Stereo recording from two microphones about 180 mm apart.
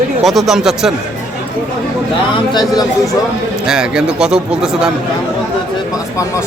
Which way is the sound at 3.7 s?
5° right (ahead or behind).